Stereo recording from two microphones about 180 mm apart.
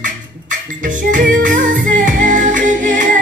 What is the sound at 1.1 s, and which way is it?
Music, 45° right (ahead or behind).